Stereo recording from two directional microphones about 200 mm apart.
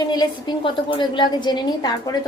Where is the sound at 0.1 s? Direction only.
20° left (ahead or behind).